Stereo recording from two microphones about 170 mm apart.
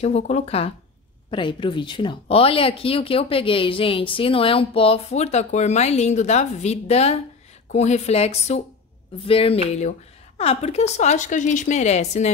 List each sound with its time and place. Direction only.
0.0 s speech: 40° left (ahead or behind)